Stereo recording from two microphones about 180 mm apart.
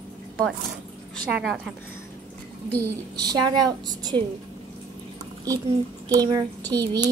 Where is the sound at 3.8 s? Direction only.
20° right (ahead or behind).